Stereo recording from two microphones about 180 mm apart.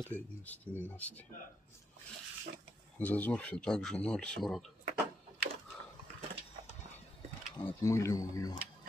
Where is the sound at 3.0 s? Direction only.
10° left (ahead or behind).